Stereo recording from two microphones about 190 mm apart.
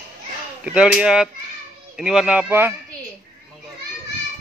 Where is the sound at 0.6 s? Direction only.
5° right (ahead or behind).